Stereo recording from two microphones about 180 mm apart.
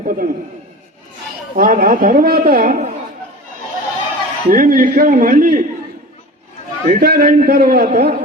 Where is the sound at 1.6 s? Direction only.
50° right (ahead or behind).